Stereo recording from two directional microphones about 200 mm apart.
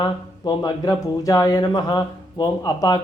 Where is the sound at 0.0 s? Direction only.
20° left (ahead or behind).